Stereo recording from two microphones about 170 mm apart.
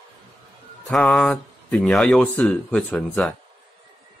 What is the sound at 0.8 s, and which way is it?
Speech, centre (ahead or behind).